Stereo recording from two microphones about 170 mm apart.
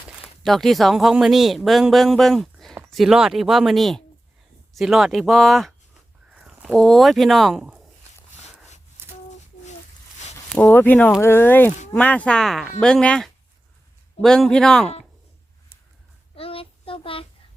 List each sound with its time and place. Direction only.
0.4 s speech: centre (ahead or behind)
10.5 s speech: 10° left (ahead or behind)
16.3 s child singing: 35° left (ahead or behind)